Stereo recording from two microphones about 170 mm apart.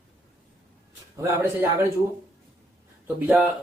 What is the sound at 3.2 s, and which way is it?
Speech, 10° right (ahead or behind).